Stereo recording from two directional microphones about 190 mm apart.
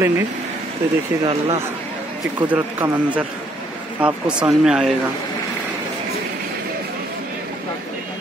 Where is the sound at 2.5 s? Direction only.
5° right (ahead or behind).